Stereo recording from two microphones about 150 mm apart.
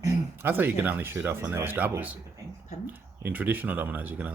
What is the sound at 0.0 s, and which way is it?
Speech, 15° right (ahead or behind).